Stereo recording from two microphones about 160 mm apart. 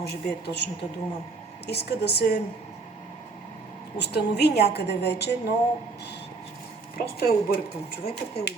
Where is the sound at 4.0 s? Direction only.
90° left.